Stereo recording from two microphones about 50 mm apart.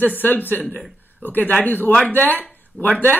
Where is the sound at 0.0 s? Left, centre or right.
Left.